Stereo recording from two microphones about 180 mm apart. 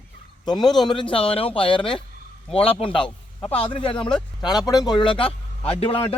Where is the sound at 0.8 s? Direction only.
30° left (ahead or behind).